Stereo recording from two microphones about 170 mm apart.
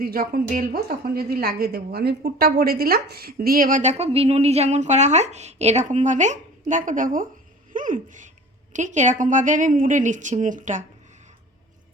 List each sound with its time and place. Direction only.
0.0 s a woman's voice: 60° right (ahead or behind)
7.7 s laughter: 50° right (ahead or behind)
8.7 s a woman's voice: 45° right (ahead or behind)